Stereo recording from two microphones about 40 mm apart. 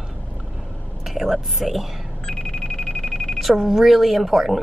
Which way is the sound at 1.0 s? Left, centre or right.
Centre.